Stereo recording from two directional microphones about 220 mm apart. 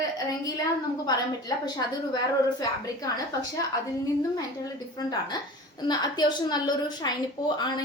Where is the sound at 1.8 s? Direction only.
20° left (ahead or behind).